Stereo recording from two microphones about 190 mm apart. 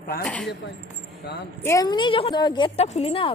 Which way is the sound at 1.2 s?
55° left (ahead or behind).